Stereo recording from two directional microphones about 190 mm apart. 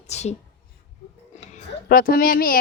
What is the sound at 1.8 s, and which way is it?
Speech, 50° left (ahead or behind).